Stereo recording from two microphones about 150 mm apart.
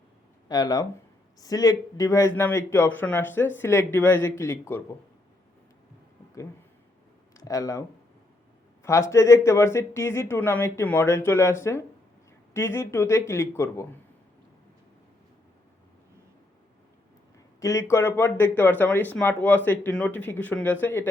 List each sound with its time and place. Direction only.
0.4 s speech: 25° left (ahead or behind)
7.3 s speech: 20° left (ahead or behind)
17.6 s speech: 20° left (ahead or behind)